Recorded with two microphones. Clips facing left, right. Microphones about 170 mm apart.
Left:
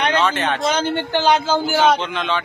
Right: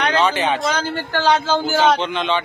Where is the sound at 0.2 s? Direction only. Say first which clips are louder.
Right 1 dB; centre (ahead or behind).